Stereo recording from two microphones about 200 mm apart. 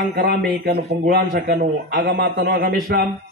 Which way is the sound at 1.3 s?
50° right (ahead or behind).